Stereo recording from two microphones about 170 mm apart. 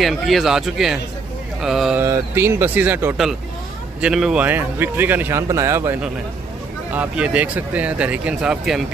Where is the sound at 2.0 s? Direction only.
15° right (ahead or behind).